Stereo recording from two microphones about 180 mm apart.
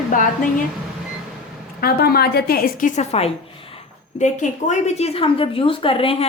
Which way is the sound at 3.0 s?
35° left (ahead or behind).